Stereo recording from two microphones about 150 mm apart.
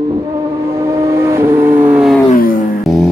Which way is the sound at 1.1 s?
20° right (ahead or behind).